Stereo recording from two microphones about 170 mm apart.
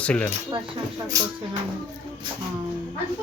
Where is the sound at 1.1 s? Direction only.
20° right (ahead or behind).